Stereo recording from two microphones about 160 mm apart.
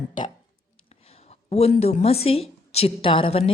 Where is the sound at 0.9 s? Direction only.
40° left (ahead or behind).